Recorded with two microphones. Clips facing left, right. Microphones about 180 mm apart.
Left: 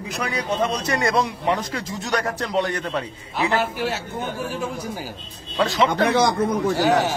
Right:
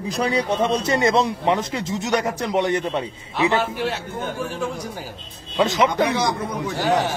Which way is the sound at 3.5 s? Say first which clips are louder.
Right 1 dB; 5° left (ahead or behind).